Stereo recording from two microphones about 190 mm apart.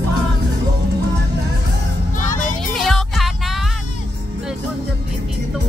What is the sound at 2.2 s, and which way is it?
Music, 40° left (ahead or behind).